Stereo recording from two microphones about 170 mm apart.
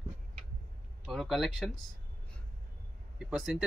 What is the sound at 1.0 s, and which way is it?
Speech, centre (ahead or behind).